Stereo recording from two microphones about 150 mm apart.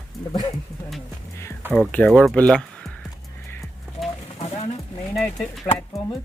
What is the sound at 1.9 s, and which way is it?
Speech, 5° left (ahead or behind).